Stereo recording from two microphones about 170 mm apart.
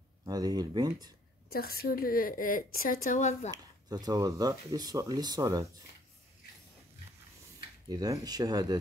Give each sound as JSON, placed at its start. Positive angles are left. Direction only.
{"t": 0.2, "sound": "speech", "side_deg": -25}
{"t": 1.5, "sound": "a woman's voice", "side_deg": 65}
{"t": 3.5, "sound": "speech", "side_deg": -25}
{"t": 7.9, "sound": "speech", "side_deg": -25}